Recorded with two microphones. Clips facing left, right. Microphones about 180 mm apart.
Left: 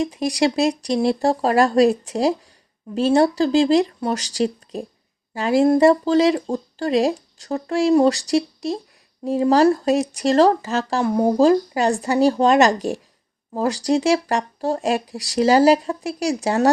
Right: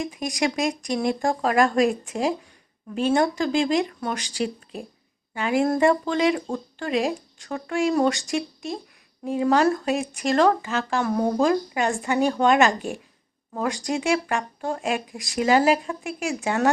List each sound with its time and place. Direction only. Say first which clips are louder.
0.0 s speech: left 6 dB; 35° left (ahead or behind)